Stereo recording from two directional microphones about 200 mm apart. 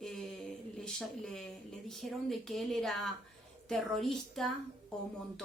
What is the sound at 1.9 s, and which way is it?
A woman's voice, centre (ahead or behind).